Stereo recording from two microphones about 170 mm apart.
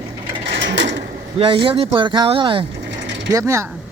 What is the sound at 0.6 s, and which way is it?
Sewing machine, 90° right.